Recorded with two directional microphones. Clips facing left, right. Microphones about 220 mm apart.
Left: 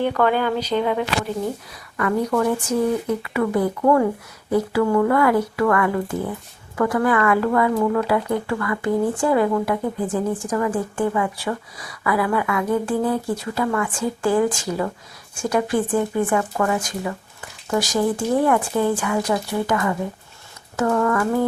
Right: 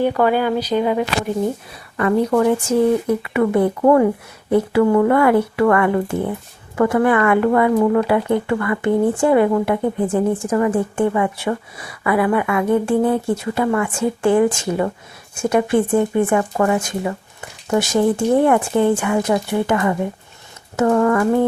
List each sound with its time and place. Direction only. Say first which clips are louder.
0.0 s speech: right 3 dB; 10° right (ahead or behind)
2.0 s speech: right 4 dB; 30° right (ahead or behind)